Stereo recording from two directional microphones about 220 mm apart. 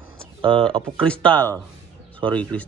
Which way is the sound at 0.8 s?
5° left (ahead or behind).